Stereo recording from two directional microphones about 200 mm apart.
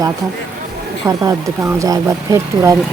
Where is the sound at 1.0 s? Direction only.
15° right (ahead or behind).